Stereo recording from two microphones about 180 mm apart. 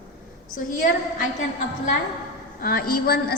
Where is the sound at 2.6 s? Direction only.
55° left (ahead or behind).